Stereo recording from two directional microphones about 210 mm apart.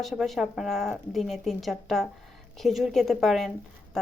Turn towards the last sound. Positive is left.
turn(degrees=0)  # may be behind; listen again after turning